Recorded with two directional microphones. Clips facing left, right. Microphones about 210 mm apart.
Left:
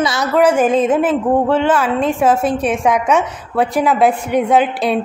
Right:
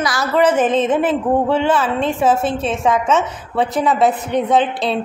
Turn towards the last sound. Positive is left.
turn(degrees=10)  # may be behind; listen again after turning